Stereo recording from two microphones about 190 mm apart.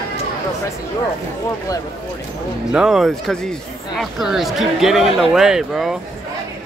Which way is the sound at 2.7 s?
5° right (ahead or behind).